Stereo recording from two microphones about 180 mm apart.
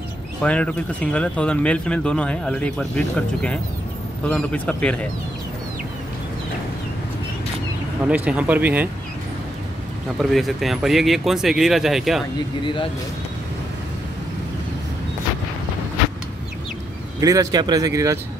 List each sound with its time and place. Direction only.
0.4 s a man's voice: 5° left (ahead or behind)
8.1 s speech: 5° right (ahead or behind)
10.1 s speech: centre (ahead or behind)
17.2 s speech: 20° right (ahead or behind)